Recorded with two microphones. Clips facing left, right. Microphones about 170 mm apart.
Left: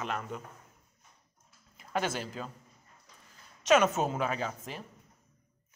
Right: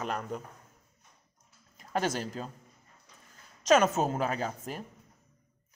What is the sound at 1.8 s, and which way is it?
Speech, 40° right (ahead or behind).